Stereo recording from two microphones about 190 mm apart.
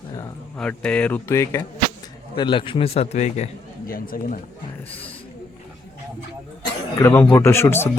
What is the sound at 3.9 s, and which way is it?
Speech, 50° left (ahead or behind).